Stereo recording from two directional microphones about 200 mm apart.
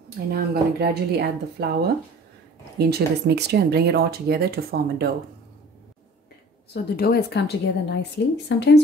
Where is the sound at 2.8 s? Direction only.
55° right (ahead or behind).